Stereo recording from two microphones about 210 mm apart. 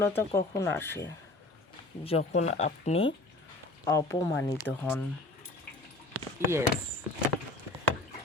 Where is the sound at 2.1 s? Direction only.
30° left (ahead or behind).